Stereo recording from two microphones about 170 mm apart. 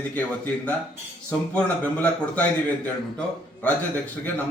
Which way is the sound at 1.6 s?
10° left (ahead or behind).